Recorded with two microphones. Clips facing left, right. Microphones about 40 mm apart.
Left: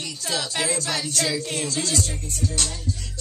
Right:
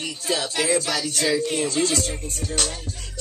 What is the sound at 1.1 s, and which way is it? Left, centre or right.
Music, right.